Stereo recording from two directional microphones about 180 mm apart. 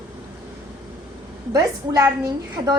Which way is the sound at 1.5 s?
20° right (ahead or behind).